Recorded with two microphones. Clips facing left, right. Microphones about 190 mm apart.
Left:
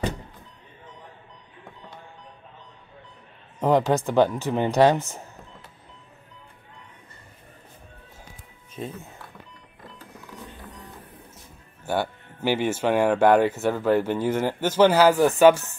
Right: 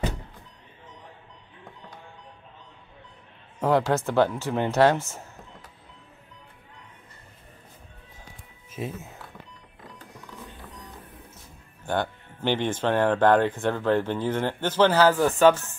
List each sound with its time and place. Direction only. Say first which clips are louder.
3.5 s speech: left 2 dB; 15° left (ahead or behind)
8.7 s speech: right 1 dB; 5° right (ahead or behind)
11.8 s speech: left 1 dB; 5° left (ahead or behind)